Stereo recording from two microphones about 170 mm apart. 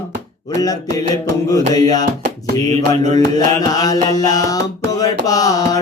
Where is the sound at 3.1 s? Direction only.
20° left (ahead or behind).